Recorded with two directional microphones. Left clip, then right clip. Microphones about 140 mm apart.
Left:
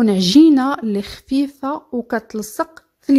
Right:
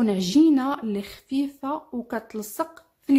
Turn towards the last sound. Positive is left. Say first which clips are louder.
# left 6 dB
turn(degrees=45)  # may be behind; listen again after turning